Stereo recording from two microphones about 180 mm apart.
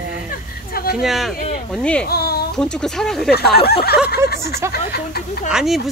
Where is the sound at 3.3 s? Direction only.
60° left (ahead or behind).